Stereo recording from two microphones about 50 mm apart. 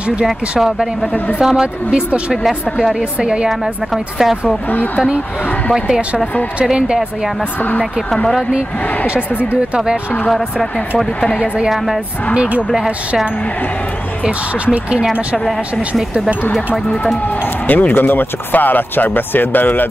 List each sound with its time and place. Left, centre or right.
0.3 s a woman's voice: centre; by 2.3 s right
2.4 s a woman's voice: centre
3.0 s speech: centre
3.4 s a woman's voice: centre
6.6 s speech: centre
8.5 s speech: right
11.4 s speech: right
11.7 s a woman's voice: centre
12.4 s speech: right
14.2 s speech: centre
17.6 s speech: left